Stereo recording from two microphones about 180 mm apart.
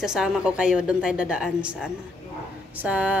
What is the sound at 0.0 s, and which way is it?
A woman's voice, 5° right (ahead or behind).